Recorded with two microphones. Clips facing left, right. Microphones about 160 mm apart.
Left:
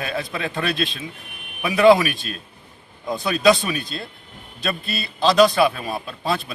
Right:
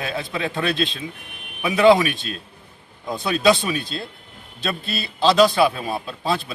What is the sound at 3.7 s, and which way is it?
Speech, 25° right (ahead or behind).